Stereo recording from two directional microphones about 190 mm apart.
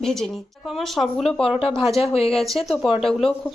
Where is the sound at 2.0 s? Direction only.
30° left (ahead or behind).